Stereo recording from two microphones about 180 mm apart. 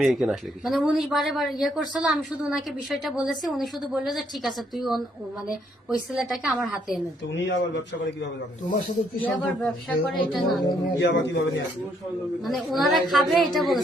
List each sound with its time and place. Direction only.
0.0 s speech: centre (ahead or behind)
7.3 s a man's voice: 90° left
9.2 s speech: 5° left (ahead or behind)
11.0 s a man's voice: 85° left
12.4 s speech: centre (ahead or behind)